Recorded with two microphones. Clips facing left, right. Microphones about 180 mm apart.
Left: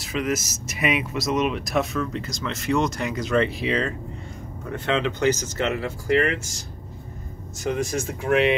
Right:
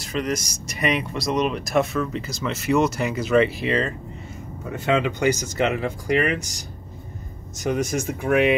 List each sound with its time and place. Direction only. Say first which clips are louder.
0.0 s speech: even; 5° left (ahead or behind); by 8.1 s 20° right (ahead or behind)